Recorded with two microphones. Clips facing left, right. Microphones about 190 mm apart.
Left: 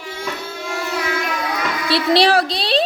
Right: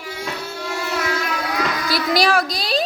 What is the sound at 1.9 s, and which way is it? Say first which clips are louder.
Speech: left 5 dB; 30° left (ahead or behind).